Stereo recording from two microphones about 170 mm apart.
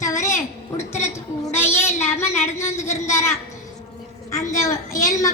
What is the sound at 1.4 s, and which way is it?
Speech, 15° left (ahead or behind).